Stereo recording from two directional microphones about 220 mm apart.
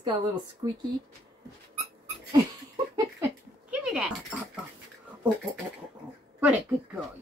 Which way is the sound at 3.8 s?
5° right (ahead or behind).